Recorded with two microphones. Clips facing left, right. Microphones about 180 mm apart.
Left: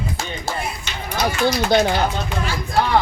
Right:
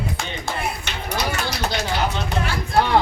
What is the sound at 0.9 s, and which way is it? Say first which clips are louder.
Speech: even; 65° right (ahead or behind).